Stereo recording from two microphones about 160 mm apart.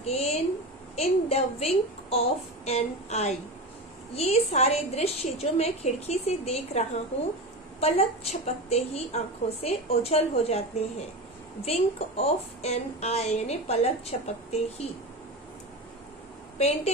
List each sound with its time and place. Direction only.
0.0 s a sound: 40° left (ahead or behind)
0.9 s a woman's voice: 40° left (ahead or behind)
11.6 s a woman's voice: 40° left (ahead or behind)
16.5 s a woman's voice: 40° left (ahead or behind)